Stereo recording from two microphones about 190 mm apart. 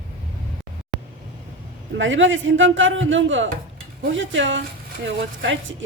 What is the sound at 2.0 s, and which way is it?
Speech, 85° right.